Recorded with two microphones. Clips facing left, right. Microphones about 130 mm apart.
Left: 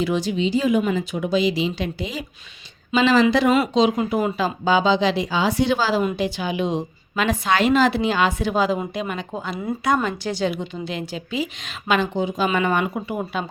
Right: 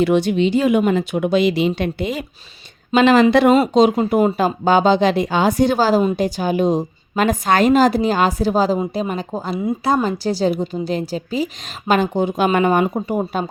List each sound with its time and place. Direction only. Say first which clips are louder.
0.0 s a woman's voice: right 6 dB; 60° right (ahead or behind); by 12.8 s 45° right (ahead or behind)
12.8 s speech: right 6 dB; 25° right (ahead or behind)
13.1 s a woman's voice: right 5 dB; 40° right (ahead or behind)